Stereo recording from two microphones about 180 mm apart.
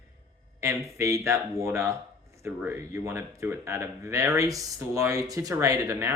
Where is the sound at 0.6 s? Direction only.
15° right (ahead or behind).